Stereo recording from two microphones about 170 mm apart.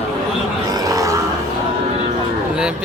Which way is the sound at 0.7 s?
20° right (ahead or behind).